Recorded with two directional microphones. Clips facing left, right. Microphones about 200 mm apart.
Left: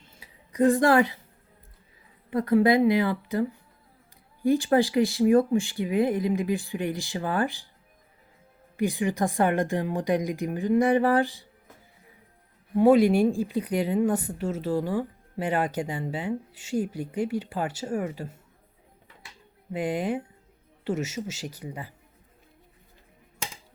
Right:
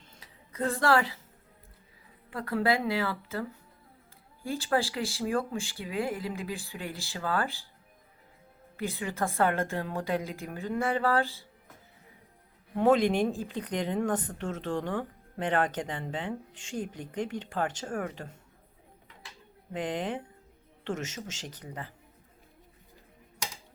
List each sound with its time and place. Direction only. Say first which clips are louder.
0.2 s a woman's voice: left 10 dB; 15° left (ahead or behind)
2.3 s a woman's voice: left 8 dB; 20° left (ahead or behind)
4.4 s a woman's voice: left 8 dB; 15° left (ahead or behind)
8.7 s a woman's voice: left 8 dB; 15° left (ahead or behind)
12.7 s a woman's voice: left 5 dB; 10° left (ahead or behind)
19.7 s a woman's voice: left 5 dB; 10° left (ahead or behind)